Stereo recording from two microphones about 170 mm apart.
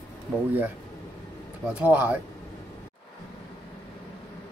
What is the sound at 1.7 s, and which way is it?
Speech, 10° right (ahead or behind).